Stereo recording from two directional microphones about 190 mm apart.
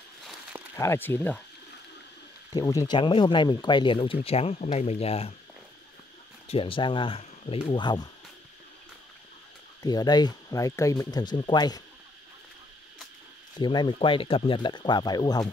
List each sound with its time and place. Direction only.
0.2 s a sound: centre (ahead or behind)
0.7 s speech: 10° left (ahead or behind)
2.5 s speech: 20° left (ahead or behind); by 5.3 s 35° left (ahead or behind)
6.4 s speech: 30° left (ahead or behind)
9.8 s speech: 20° left (ahead or behind)
13.6 s speech: 25° left (ahead or behind)